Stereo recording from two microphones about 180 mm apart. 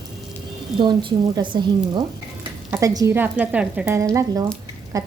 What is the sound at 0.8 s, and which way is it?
A woman's voice, 25° right (ahead or behind).